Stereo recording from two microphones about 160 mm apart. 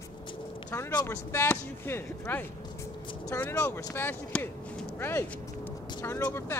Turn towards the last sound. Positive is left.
turn(degrees=15)  # may be behind; listen again after turning